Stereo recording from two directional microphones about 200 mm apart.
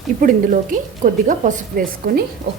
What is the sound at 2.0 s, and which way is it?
Speech, 50° right (ahead or behind).